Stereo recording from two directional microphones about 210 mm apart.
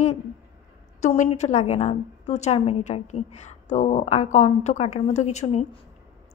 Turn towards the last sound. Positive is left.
turn(degrees=35)  # may be behind; listen again after turning